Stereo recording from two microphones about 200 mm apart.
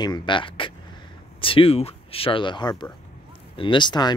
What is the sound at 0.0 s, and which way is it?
Speech, 20° left (ahead or behind).